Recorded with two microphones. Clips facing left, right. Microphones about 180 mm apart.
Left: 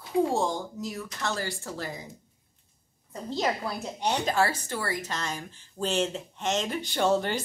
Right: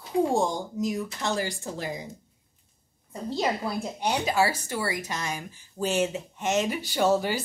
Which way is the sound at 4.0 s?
10° right (ahead or behind).